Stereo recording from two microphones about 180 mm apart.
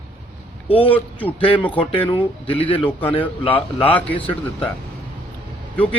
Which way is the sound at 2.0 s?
25° left (ahead or behind).